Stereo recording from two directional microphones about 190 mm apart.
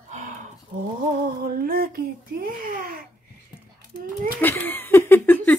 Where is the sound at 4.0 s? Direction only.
50° right (ahead or behind).